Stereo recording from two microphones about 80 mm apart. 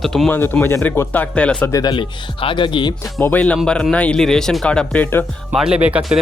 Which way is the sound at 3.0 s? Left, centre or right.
Left.